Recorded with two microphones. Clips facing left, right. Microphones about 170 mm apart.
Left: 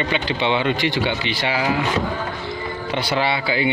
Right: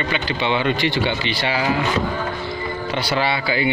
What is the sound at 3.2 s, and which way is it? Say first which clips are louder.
Speech: even; 20° left (ahead or behind).